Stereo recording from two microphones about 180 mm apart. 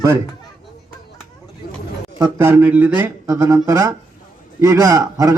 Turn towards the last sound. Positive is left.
turn(degrees=-20)  # may be behind; listen again after turning